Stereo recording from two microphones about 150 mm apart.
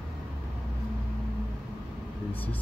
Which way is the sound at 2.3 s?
10° left (ahead or behind).